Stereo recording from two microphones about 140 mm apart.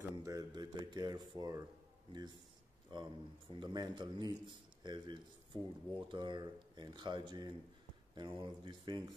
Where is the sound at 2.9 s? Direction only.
35° right (ahead or behind).